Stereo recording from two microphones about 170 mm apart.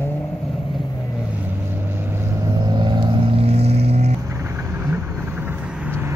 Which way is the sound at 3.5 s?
35° right (ahead or behind).